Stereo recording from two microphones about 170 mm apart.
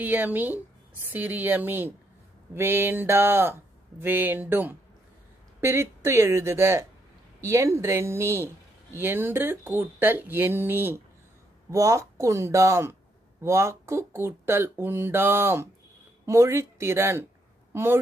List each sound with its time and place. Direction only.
0.0 s speech: 10° right (ahead or behind)